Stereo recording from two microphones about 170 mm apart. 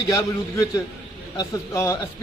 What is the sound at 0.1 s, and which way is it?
A man's voice, 20° left (ahead or behind).